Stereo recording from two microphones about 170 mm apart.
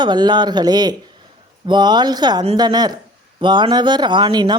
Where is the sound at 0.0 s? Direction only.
25° right (ahead or behind).